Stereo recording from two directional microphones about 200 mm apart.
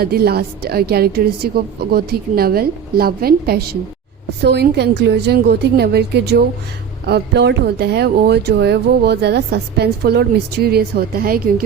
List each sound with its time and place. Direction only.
0.0 s a woman's voice: 50° right (ahead or behind)